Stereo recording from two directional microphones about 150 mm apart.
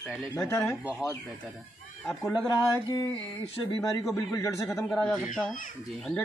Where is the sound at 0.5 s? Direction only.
15° left (ahead or behind).